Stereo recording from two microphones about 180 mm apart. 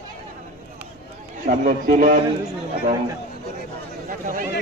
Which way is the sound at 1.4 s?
45° right (ahead or behind).